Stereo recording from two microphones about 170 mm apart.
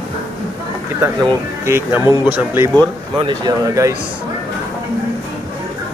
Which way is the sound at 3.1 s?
25° right (ahead or behind).